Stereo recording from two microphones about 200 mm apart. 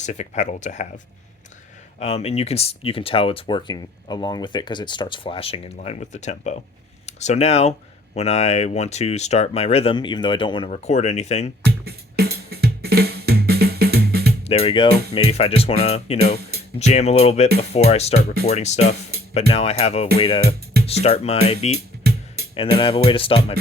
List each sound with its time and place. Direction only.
0.0 s speech: 35° left (ahead or behind)
11.6 s music: 50° right (ahead or behind)
14.4 s speech: 30° left (ahead or behind)
14.8 s speech: 50° right (ahead or behind)
15.1 s speech: 30° left (ahead or behind)
22.8 s speech: 25° left (ahead or behind)